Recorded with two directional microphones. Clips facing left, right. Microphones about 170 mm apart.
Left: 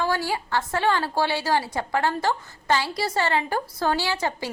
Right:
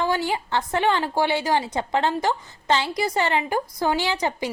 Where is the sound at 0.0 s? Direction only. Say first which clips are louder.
Right 2 dB; 20° right (ahead or behind).